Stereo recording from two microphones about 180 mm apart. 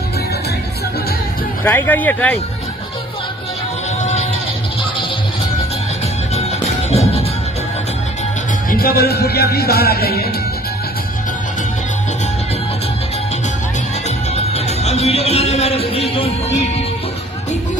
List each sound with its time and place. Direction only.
1.6 s speech: 10° left (ahead or behind)
4.0 s music: 40° left (ahead or behind)
6.9 s music: 35° left (ahead or behind)
8.6 s music: 55° left (ahead or behind)
14.3 s music: 35° left (ahead or behind)